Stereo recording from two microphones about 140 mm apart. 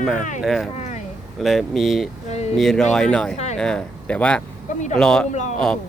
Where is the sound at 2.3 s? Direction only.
50° left (ahead or behind).